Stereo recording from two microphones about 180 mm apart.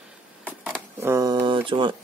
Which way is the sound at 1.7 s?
30° right (ahead or behind).